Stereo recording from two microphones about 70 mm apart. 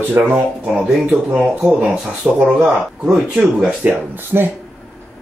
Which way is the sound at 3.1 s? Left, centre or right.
Centre.